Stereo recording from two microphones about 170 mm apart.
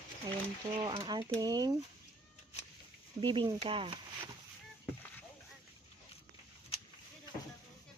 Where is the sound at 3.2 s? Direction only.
25° right (ahead or behind).